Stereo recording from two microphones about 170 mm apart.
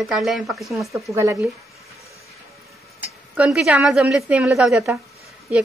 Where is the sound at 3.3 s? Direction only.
5° right (ahead or behind).